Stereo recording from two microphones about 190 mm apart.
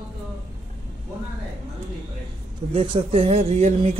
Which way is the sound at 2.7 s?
25° right (ahead or behind).